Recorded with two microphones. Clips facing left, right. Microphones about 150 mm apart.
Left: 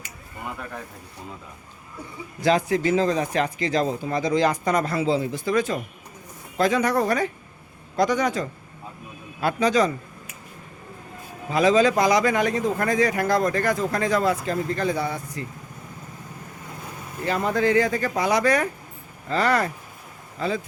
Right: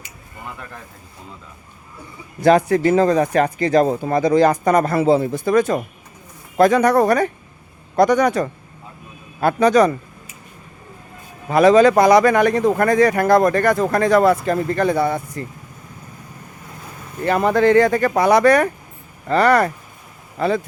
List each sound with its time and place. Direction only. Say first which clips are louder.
2.4 s speech: right 7 dB; 55° right (ahead or behind)
11.4 s speech: right 7 dB; 65° right (ahead or behind)
17.2 s speech: right 7 dB; 65° right (ahead or behind)